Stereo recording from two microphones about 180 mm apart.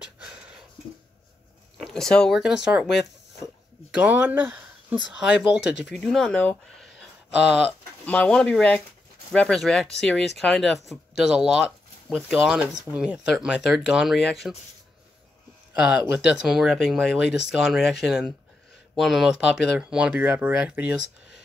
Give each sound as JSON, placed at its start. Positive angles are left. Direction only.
{"t": 1.8, "sound": "speech", "side_deg": 0}
{"t": 5.7, "sound": "speech", "side_deg": 70}
{"t": 5.9, "sound": "speech", "side_deg": 0}
{"t": 7.2, "sound": "speech", "side_deg": -5}
{"t": 8.0, "sound": "speech", "side_deg": 5}
{"t": 15.8, "sound": "speech", "side_deg": -5}